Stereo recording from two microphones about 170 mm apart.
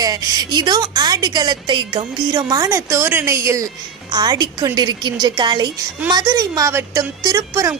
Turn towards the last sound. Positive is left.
turn(degrees=-20)  # may be behind; listen again after turning